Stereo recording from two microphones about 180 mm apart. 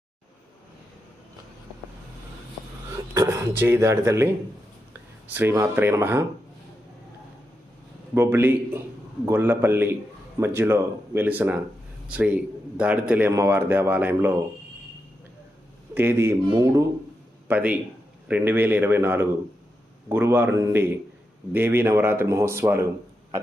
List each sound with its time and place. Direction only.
3.2 s a man's voice: 15° right (ahead or behind)
5.3 s a man's voice: 15° right (ahead or behind)
8.1 s a man's voice: 15° right (ahead or behind)
16.0 s a man's voice: 15° right (ahead or behind)
17.5 s a man's voice: 10° right (ahead or behind)